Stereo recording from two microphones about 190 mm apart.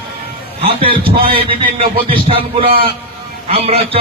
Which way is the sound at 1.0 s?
30° right (ahead or behind).